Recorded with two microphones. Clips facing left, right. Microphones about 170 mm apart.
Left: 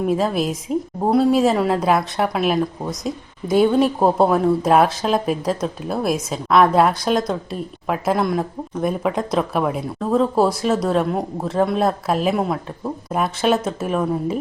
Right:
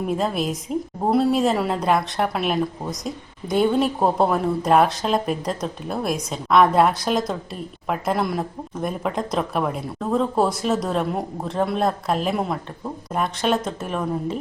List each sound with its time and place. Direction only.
0.1 s speech: centre (ahead or behind)